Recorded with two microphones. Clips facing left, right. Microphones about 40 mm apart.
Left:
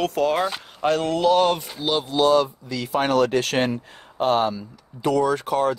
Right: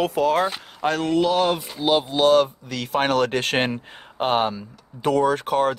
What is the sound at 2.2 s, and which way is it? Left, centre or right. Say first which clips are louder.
Speech: even; right.